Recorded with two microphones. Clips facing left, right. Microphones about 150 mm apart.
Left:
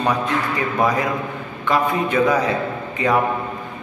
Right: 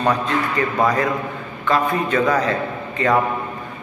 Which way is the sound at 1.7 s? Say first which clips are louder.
Even; 15° left (ahead or behind).